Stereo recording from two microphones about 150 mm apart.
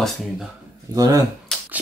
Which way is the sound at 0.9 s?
25° right (ahead or behind).